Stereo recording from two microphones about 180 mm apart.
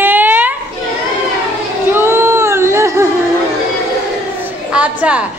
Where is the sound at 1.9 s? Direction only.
10° right (ahead or behind).